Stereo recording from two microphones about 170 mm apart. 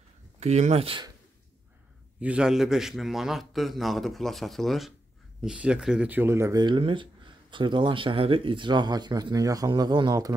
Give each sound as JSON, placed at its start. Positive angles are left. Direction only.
{"t": 0.4, "sound": "speech", "side_deg": -40}
{"t": 2.1, "sound": "a man's voice", "side_deg": -5}